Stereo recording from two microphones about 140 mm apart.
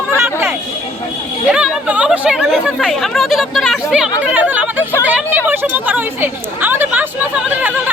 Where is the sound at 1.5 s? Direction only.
5° right (ahead or behind).